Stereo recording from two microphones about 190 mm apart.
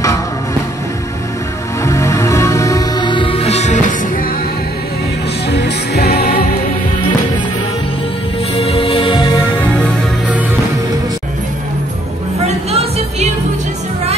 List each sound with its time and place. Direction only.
1.9 s music: 15° left (ahead or behind); by 4.3 s 40° left (ahead or behind)
5.5 s music: 60° left (ahead or behind)
8.5 s music: 30° left (ahead or behind)
12.7 s music: 30° right (ahead or behind)